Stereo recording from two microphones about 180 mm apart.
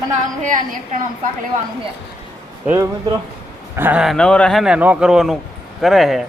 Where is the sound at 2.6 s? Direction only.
15° right (ahead or behind).